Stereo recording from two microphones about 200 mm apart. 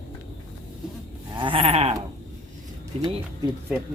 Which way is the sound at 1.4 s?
25° right (ahead or behind).